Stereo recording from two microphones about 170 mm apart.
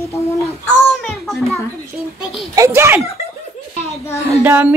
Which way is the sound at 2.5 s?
15° right (ahead or behind).